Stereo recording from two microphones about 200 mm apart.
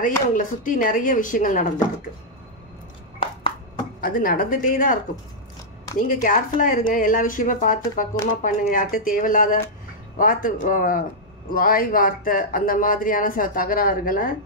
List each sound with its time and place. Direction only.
0.0 s speech: 40° left (ahead or behind)
4.0 s speech: 45° left (ahead or behind)
6.2 s speech: 40° left (ahead or behind)